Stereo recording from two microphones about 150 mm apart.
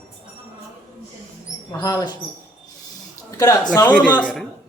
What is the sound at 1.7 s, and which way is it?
Speech, 25° left (ahead or behind).